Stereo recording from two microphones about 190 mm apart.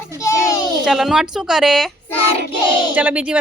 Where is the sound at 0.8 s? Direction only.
Centre (ahead or behind).